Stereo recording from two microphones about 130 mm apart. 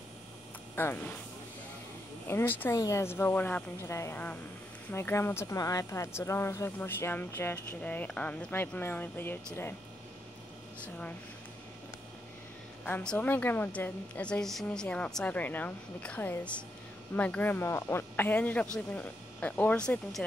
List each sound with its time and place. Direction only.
0.7 s a woman's voice: 15° left (ahead or behind)
2.2 s a woman's voice: 15° left (ahead or behind)
10.8 s a woman's voice: 10° left (ahead or behind)
12.8 s a woman's voice: 10° left (ahead or behind)